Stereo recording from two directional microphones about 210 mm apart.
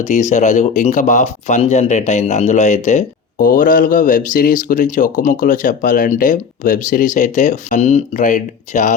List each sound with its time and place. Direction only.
0.0 s speech: 35° left (ahead or behind)